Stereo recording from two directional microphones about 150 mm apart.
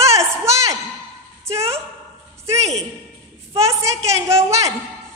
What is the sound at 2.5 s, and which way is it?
Speech, 45° right (ahead or behind).